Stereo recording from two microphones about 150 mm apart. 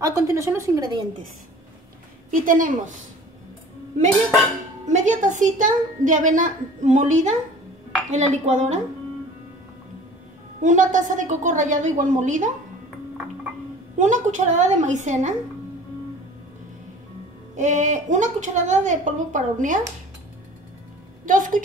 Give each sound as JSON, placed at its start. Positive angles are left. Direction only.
{"t": 0.0, "sound": "speech", "side_deg": -20}
{"t": 2.3, "sound": "a woman's voice", "side_deg": -65}
{"t": 4.8, "sound": "a woman's voice", "side_deg": -55}
{"t": 10.6, "sound": "a woman's voice", "side_deg": -55}
{"t": 13.9, "sound": "a woman's voice", "side_deg": -55}
{"t": 17.6, "sound": "a woman's voice", "side_deg": -55}
{"t": 21.3, "sound": "a woman's voice", "side_deg": -65}